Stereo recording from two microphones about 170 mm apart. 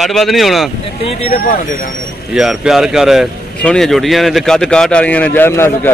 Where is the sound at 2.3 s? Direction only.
5° right (ahead or behind); by 5.9 s 15° left (ahead or behind).